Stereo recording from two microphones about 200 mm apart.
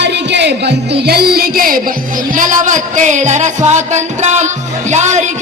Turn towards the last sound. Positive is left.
turn(degrees=-35)  # may be behind; listen again after turning